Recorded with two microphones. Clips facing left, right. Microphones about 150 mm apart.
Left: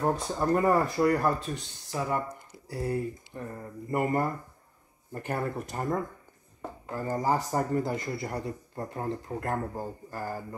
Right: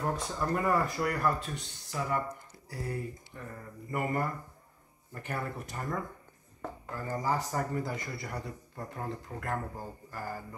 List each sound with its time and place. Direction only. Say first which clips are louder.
0.1 s a man's voice: left 6 dB; 30° left (ahead or behind)